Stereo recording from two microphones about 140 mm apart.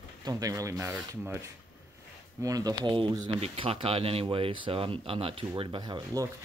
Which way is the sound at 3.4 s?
45° right (ahead or behind).